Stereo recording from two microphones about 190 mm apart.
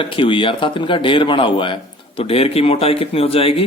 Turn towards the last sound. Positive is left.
turn(degrees=30)  # may be behind; listen again after turning